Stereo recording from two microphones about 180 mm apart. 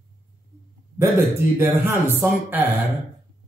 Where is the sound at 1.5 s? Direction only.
15° right (ahead or behind).